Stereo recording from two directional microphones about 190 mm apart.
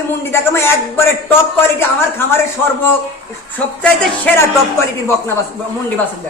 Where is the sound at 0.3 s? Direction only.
15° left (ahead or behind).